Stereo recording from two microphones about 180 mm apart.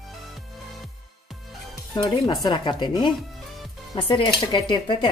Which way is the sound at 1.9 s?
20° left (ahead or behind).